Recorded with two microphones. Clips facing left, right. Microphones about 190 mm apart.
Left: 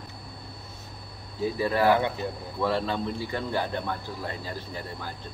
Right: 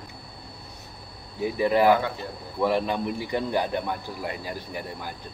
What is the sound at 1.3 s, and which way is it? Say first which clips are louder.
Speech: right 3 dB; 15° right (ahead or behind).